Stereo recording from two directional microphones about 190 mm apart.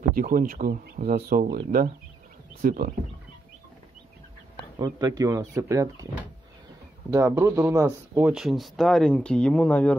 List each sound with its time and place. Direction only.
0.1 s speech: 45° right (ahead or behind)
4.7 s speech: 20° right (ahead or behind)
7.1 s speech: 15° right (ahead or behind); by 9.9 s 10° left (ahead or behind)